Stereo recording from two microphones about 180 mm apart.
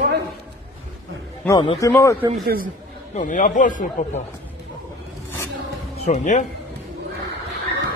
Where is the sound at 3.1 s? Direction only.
45° left (ahead or behind).